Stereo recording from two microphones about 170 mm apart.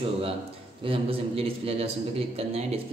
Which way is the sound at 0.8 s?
35° right (ahead or behind).